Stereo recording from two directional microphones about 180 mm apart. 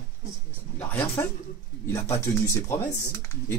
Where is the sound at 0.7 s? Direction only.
10° left (ahead or behind).